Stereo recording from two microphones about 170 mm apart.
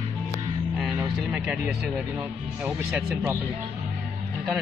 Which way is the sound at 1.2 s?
5° right (ahead or behind).